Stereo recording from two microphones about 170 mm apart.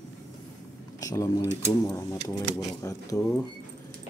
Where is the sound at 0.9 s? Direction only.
20° left (ahead or behind).